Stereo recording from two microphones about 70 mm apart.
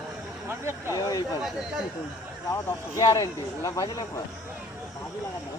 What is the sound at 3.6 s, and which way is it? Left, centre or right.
Speech, left.